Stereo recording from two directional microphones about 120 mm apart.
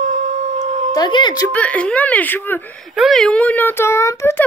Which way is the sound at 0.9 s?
40° left (ahead or behind).